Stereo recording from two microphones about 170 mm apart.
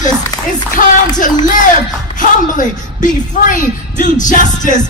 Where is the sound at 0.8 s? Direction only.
50° left (ahead or behind).